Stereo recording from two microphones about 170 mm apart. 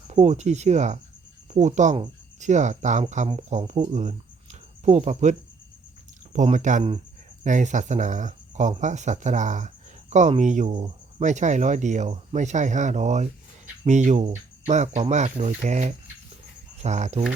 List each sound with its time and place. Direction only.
0.1 s speech: 40° right (ahead or behind)
4.9 s speech: 40° right (ahead or behind)
14.6 s cricket: 40° right (ahead or behind)
15.1 s speech: 45° right (ahead or behind)